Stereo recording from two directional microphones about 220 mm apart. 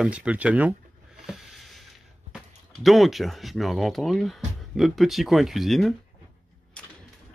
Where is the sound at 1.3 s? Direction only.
Centre (ahead or behind).